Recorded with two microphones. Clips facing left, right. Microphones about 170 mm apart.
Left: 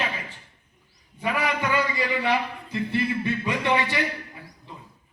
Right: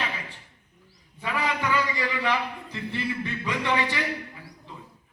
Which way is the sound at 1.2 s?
15° left (ahead or behind).